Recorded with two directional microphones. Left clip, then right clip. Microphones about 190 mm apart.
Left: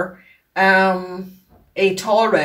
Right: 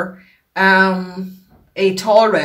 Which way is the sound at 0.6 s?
20° right (ahead or behind).